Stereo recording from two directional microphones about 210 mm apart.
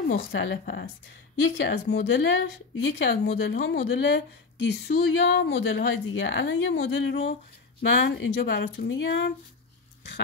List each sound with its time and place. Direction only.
0.1 s speech: 60° left (ahead or behind)